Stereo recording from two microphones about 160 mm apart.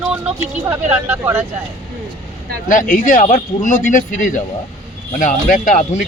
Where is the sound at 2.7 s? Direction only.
55° left (ahead or behind).